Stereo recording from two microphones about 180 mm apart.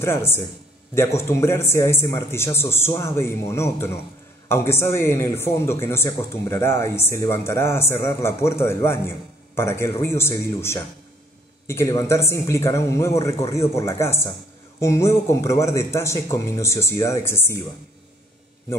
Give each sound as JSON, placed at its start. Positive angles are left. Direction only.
{"t": 0.0, "sound": "speech", "side_deg": 15}